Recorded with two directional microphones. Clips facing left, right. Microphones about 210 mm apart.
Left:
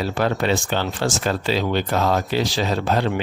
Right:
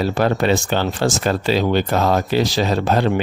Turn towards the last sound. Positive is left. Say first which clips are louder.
# right 3 dB
turn(degrees=-45)  # may be behind; listen again after turning